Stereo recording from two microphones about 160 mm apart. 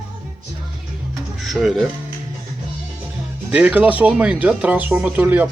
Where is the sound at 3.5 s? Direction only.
10° right (ahead or behind).